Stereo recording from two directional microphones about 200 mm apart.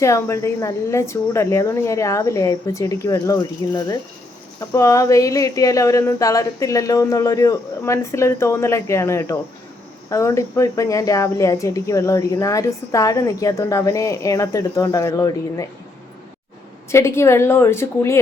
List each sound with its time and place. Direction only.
0.0 s speech: 15° left (ahead or behind)
16.9 s speech: 15° left (ahead or behind)